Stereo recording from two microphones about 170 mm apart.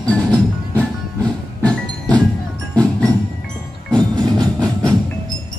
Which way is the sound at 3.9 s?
25° right (ahead or behind).